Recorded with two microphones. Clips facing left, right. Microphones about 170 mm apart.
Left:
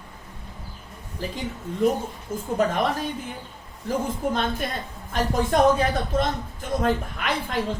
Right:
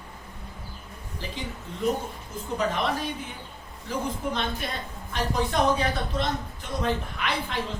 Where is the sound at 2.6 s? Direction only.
50° left (ahead or behind).